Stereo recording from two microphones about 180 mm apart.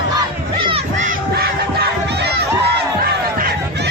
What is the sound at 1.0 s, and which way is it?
Crowd, 55° right (ahead or behind).